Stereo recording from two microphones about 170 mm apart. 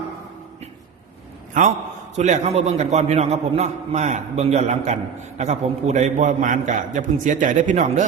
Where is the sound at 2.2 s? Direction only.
40° right (ahead or behind).